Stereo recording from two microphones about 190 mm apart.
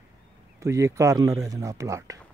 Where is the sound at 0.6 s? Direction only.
15° right (ahead or behind).